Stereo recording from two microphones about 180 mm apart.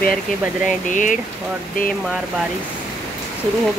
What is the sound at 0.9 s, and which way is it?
Speech, 45° left (ahead or behind).